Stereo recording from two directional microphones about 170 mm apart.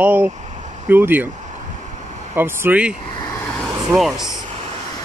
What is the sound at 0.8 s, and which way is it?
Speech, 10° right (ahead or behind).